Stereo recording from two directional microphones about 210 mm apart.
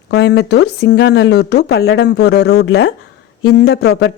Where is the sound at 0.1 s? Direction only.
55° left (ahead or behind).